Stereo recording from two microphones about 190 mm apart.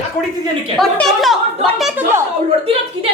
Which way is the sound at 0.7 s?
Centre (ahead or behind).